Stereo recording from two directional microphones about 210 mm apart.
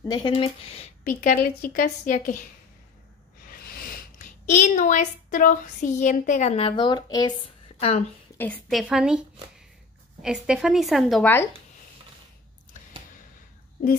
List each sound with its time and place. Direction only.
0.0 s speech: 20° left (ahead or behind); by 2.4 s 40° left (ahead or behind)
3.4 s speech: 45° left (ahead or behind); by 8.0 s 25° left (ahead or behind)
8.4 s a woman's voice: 5° left (ahead or behind)
10.2 s a woman's voice: 5° right (ahead or behind)